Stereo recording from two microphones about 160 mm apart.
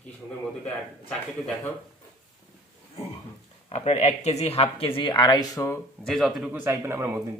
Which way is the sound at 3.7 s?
45° left (ahead or behind).